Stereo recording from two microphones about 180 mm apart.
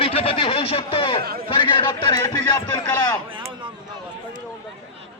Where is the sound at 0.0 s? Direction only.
30° left (ahead or behind).